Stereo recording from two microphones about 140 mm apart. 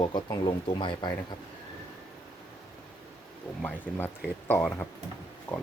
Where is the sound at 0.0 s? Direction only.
30° left (ahead or behind).